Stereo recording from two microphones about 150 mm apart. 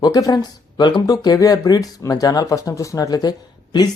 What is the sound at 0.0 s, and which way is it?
Speech, 25° left (ahead or behind).